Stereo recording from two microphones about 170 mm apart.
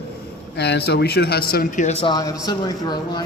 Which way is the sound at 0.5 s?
80° left.